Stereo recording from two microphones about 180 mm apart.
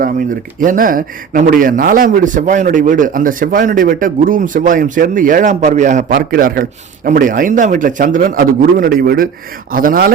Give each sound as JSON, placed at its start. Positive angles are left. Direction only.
{"t": 0.6, "sound": "speech", "side_deg": -50}